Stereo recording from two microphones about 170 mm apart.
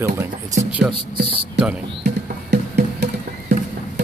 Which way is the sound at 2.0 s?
75° right (ahead or behind).